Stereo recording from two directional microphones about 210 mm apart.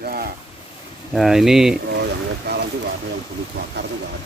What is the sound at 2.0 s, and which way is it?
Vehicle, 50° right (ahead or behind).